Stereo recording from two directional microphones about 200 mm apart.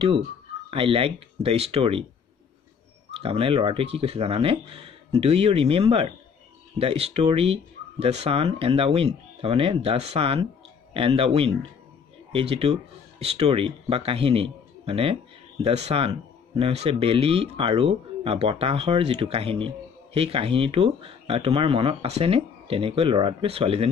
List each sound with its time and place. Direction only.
0.7 s a man's voice: 25° right (ahead or behind)
3.2 s a man's voice: 25° right (ahead or behind)